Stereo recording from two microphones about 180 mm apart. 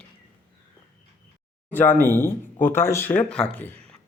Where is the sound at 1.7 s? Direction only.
10° left (ahead or behind).